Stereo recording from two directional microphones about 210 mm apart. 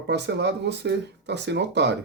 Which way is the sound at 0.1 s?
55° right (ahead or behind).